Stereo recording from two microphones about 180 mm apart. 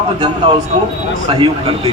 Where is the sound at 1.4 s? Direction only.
30° right (ahead or behind).